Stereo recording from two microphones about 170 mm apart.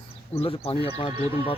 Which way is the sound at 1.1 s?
30° right (ahead or behind).